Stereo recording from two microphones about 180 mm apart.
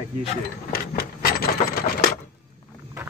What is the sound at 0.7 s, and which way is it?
Wood, 55° left (ahead or behind).